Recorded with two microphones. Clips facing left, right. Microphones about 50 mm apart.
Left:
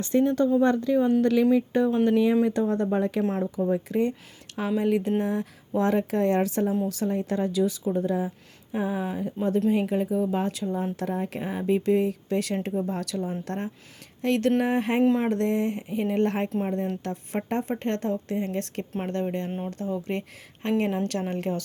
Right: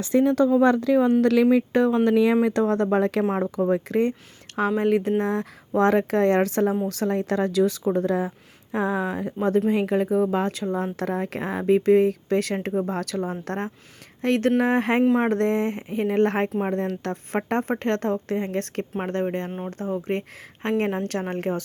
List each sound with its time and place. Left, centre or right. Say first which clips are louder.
0.3 s speech: right 3 dB; right
3.4 s speech: right 3 dB; right
16.6 s speech: right 3 dB; right